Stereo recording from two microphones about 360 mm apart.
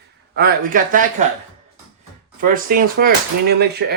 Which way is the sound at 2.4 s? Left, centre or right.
Right.